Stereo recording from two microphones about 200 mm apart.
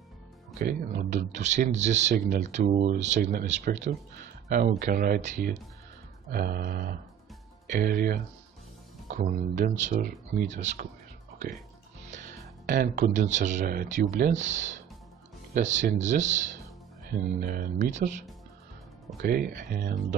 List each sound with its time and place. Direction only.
0.6 s speech: 40° right (ahead or behind)
3.2 s speech: 50° right (ahead or behind)
3.4 s speech: 35° right (ahead or behind)
6.3 s speech: 50° right (ahead or behind)
12.0 s speech: 35° right (ahead or behind)
19.3 s speech: 40° right (ahead or behind)